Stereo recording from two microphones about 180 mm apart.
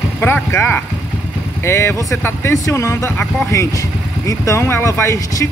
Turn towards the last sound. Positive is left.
turn(degrees=15)  # may be behind; listen again after turning